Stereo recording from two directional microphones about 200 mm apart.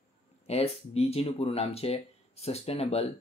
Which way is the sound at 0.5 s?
30° left (ahead or behind).